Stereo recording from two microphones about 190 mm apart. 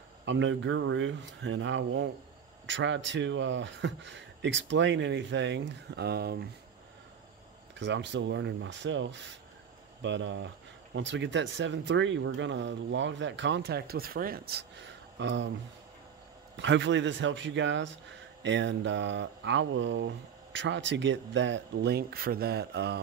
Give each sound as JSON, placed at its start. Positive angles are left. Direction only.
{"t": 0.2, "sound": "speech", "side_deg": -75}
{"t": 7.8, "sound": "speech", "side_deg": -70}
{"t": 16.5, "sound": "speech", "side_deg": -75}